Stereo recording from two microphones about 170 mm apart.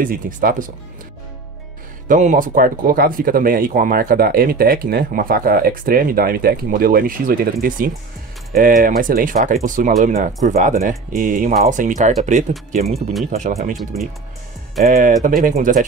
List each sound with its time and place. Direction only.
0.0 s speech: 55° right (ahead or behind)
2.0 s speech: 50° right (ahead or behind)
10.8 s speech: 60° right (ahead or behind); by 13.7 s 40° right (ahead or behind)
14.9 s speech: 55° right (ahead or behind)